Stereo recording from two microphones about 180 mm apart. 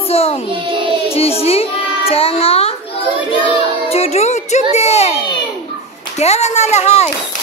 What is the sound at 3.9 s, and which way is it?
Music, 35° left (ahead or behind).